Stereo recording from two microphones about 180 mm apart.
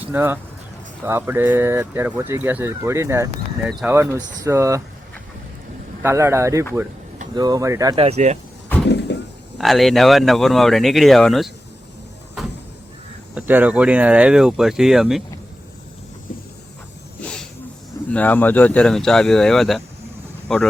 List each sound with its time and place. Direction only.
0.0 s speech: 10° right (ahead or behind)
3.7 s speech: centre (ahead or behind)
3.9 s speech: 15° right (ahead or behind)
6.0 s speech: 15° right (ahead or behind)
7.9 s speech: 35° right (ahead or behind)
9.1 s a sound: 75° left (ahead or behind)
9.6 s speech: centre (ahead or behind)
13.3 s speech: 10° right (ahead or behind)
18.1 s speech: 10° left (ahead or behind)